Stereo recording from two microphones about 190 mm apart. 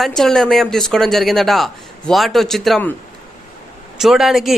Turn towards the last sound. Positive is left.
turn(degrees=0)  # may be behind; listen again after turning